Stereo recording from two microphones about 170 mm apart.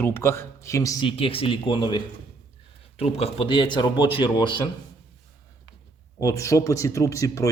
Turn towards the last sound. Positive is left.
turn(degrees=20)  # may be behind; listen again after turning